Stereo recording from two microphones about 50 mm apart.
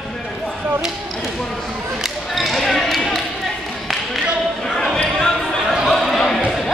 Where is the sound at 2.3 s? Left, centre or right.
Centre.